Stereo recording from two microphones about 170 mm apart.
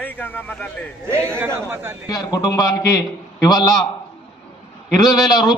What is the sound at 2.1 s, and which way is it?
A man's voice, 20° left (ahead or behind).